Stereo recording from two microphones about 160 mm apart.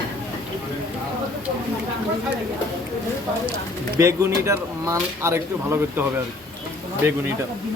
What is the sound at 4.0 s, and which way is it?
Speech, 15° right (ahead or behind).